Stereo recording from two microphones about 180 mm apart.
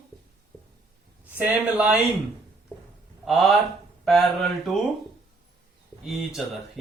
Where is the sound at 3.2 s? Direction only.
Centre (ahead or behind).